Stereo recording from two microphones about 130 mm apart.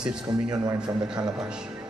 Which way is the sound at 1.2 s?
5° right (ahead or behind).